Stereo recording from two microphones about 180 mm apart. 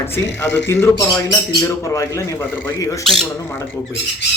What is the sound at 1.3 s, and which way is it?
A man's voice, 15° left (ahead or behind).